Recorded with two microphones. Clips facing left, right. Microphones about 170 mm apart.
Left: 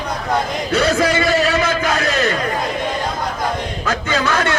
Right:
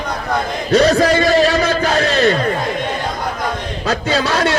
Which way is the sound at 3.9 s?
35° right (ahead or behind).